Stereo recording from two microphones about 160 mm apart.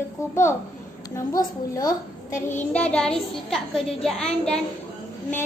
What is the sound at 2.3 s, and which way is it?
Child singing, 50° left (ahead or behind).